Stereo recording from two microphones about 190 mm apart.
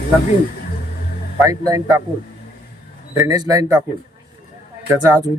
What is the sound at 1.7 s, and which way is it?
Speech, 15° right (ahead or behind).